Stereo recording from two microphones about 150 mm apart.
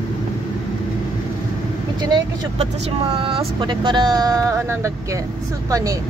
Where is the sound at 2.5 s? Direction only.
40° right (ahead or behind); by 6.0 s 25° right (ahead or behind).